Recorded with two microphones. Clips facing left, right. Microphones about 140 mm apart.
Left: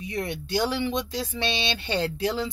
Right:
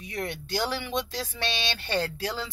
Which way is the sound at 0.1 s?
20° left (ahead or behind).